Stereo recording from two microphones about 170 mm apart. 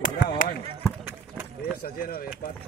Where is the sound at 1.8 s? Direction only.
60° left (ahead or behind).